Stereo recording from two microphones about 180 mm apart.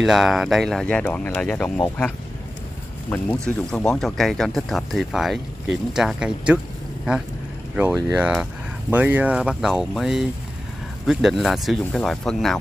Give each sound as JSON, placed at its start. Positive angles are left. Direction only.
{"t": 0.0, "sound": "speech", "side_deg": 0}
{"t": 3.4, "sound": "speech", "side_deg": 5}
{"t": 7.7, "sound": "speech", "side_deg": -5}